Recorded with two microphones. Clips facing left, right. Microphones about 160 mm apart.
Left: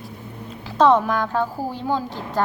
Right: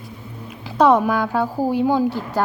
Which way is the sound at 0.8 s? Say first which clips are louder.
Right 1 dB; 10° right (ahead or behind).